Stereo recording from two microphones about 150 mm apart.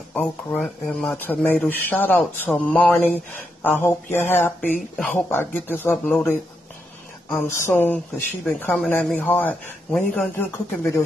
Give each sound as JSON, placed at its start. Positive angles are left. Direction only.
{"t": 0.6, "sound": "speech", "side_deg": 0}
{"t": 1.1, "sound": "speech", "side_deg": 10}
{"t": 10.3, "sound": "speech", "side_deg": 15}